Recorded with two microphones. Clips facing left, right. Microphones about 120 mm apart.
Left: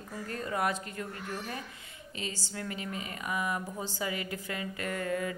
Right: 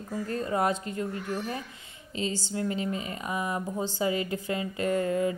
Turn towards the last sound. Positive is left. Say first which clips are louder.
# right 7 dB
turn(degrees=-25)  # may be behind; listen again after turning